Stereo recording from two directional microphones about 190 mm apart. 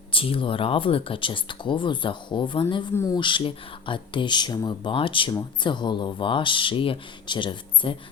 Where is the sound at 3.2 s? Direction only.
25° left (ahead or behind).